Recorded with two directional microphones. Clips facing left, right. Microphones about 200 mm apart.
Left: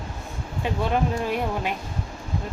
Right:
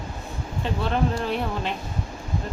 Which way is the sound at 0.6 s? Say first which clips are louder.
Left 1 dB; 10° left (ahead or behind).